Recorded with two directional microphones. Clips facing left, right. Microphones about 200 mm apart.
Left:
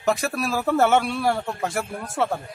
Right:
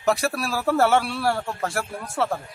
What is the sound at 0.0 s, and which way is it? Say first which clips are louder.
A man's voice: even; 5° right (ahead or behind).